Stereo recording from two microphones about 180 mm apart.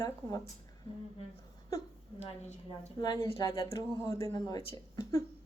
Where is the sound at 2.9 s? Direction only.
25° left (ahead or behind).